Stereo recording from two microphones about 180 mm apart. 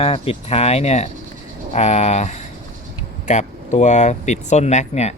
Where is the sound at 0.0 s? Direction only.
30° left (ahead or behind).